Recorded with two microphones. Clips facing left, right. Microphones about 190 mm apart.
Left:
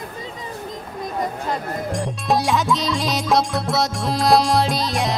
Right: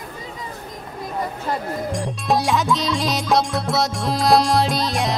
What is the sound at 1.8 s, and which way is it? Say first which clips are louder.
Music: left 1 dB; centre (ahead or behind).